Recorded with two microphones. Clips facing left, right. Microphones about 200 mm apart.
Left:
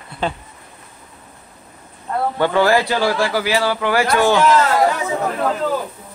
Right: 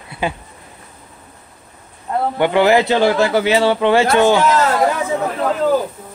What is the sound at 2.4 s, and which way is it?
A man's voice, 20° right (ahead or behind).